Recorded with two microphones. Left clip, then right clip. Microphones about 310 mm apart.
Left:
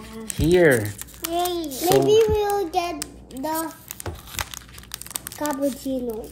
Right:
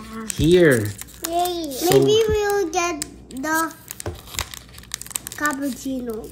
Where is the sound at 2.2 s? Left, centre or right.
Right.